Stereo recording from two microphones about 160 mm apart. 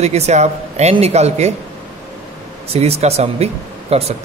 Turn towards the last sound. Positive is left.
turn(degrees=-40)  # may be behind; listen again after turning